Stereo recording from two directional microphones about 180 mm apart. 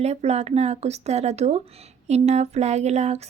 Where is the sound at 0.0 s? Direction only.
35° right (ahead or behind).